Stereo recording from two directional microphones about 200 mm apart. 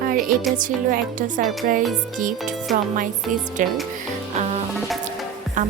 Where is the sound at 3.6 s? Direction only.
40° right (ahead or behind).